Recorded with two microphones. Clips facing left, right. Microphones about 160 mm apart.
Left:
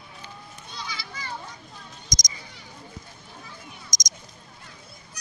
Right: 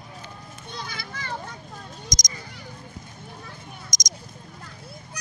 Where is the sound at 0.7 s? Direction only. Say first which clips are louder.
Right 1 dB; 50° right (ahead or behind).